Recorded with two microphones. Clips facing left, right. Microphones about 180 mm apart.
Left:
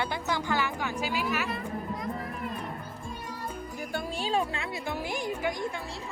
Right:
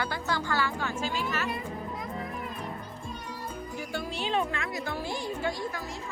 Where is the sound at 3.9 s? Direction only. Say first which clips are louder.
Left 1 dB; 40° left (ahead or behind).